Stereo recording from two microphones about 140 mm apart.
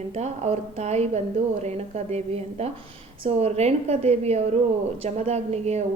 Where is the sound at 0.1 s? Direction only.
50° right (ahead or behind).